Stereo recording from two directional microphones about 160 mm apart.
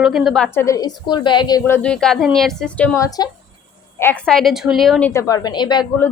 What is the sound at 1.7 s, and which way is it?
Speech, 5° left (ahead or behind).